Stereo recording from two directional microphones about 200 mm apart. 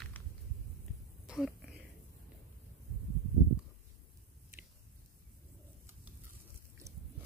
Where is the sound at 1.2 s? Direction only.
5° right (ahead or behind).